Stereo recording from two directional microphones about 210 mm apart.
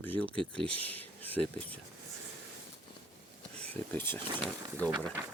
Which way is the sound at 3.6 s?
10° left (ahead or behind).